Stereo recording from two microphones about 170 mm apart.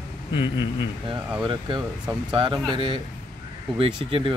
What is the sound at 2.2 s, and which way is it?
Speech, 25° right (ahead or behind).